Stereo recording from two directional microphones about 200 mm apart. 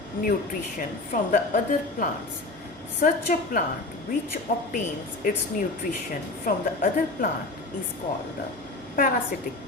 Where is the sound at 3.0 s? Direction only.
40° left (ahead or behind).